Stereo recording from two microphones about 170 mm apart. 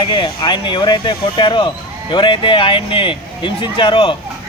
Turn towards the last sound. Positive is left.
turn(degrees=30)  # may be behind; listen again after turning